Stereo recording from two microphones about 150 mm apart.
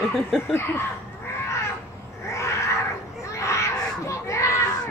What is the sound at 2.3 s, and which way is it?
Roaring cats, 20° left (ahead or behind).